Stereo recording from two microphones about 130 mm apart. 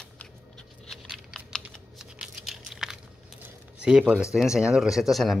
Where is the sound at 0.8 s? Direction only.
Centre (ahead or behind).